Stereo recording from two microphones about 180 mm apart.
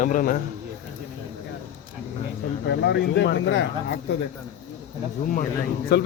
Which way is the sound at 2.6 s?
70° left (ahead or behind).